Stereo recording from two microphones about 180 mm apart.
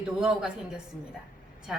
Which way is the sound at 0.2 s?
5° right (ahead or behind).